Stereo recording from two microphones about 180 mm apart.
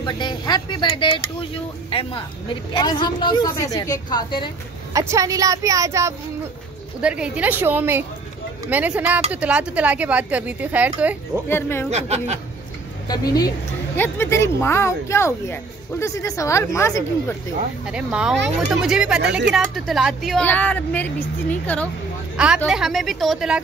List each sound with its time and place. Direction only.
0.0 s a woman's voice: 25° left (ahead or behind)
4.9 s speech: 15° right (ahead or behind)
7.0 s speech: 5° right (ahead or behind)
11.4 s speech: 10° left (ahead or behind)
11.9 s speech: 35° right (ahead or behind)
13.1 s a woman's voice: 20° left (ahead or behind)
17.8 s speech: 5° right (ahead or behind)
22.7 s speech: centre (ahead or behind)